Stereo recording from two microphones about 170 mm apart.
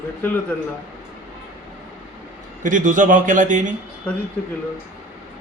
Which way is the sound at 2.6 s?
50° right (ahead or behind).